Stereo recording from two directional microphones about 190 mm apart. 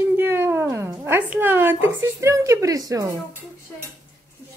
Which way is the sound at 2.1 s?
15° right (ahead or behind).